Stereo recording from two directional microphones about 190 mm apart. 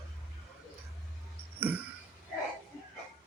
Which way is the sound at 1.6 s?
10° right (ahead or behind).